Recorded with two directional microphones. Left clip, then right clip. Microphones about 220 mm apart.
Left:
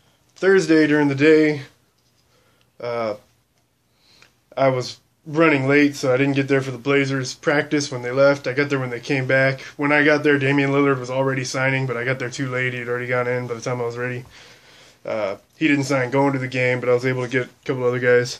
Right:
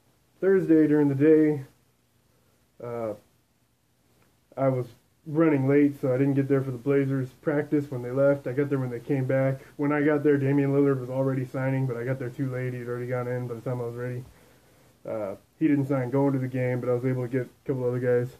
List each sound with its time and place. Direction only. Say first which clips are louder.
0.4 s speech: left 6 dB; 15° left (ahead or behind)
2.8 s speech: left 8 dB; 10° left (ahead or behind)
4.6 s speech: left 8 dB; 10° left (ahead or behind)